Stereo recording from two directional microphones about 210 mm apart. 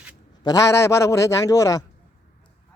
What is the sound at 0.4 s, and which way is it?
Speech, 15° left (ahead or behind).